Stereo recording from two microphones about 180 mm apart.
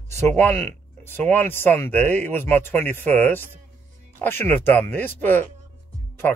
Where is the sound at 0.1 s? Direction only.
10° left (ahead or behind).